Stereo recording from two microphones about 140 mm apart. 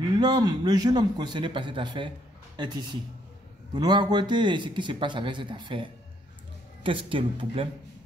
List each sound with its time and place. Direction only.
0.2 s a man's voice: 30° right (ahead or behind)